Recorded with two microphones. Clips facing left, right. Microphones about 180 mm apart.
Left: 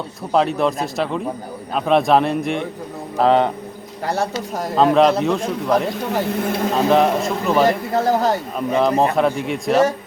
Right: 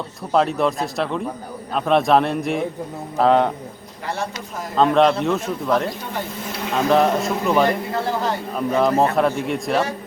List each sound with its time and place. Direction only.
0.3 s a man's voice: centre (ahead or behind)
4.0 s speech: 40° left (ahead or behind)
4.7 s a man's voice: centre (ahead or behind)
6.2 s speech: 65° left (ahead or behind)
6.9 s a man's voice: centre (ahead or behind)
7.9 s speech: 40° left (ahead or behind)
8.5 s a man's voice: centre (ahead or behind)